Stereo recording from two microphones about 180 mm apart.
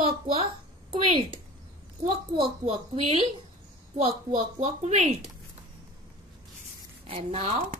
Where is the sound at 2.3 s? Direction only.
30° right (ahead or behind).